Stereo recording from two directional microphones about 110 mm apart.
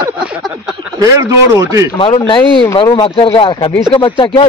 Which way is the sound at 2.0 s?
55° left (ahead or behind).